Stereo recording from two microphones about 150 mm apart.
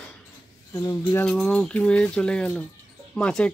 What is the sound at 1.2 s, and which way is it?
Speech, 5° left (ahead or behind).